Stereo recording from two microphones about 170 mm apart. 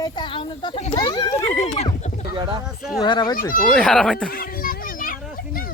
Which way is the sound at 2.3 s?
25° right (ahead or behind).